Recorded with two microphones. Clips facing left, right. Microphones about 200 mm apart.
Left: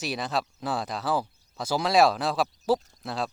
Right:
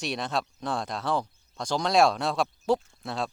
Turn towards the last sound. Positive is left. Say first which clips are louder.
# left 1 dB
turn(degrees=0)  # may be behind; listen again after turning